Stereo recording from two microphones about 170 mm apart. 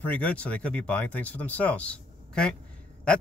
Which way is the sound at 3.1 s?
5° left (ahead or behind).